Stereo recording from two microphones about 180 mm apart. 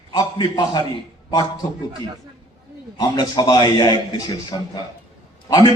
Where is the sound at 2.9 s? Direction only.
25° left (ahead or behind).